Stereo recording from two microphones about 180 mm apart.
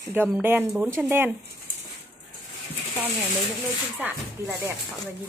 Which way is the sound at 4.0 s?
10° right (ahead or behind).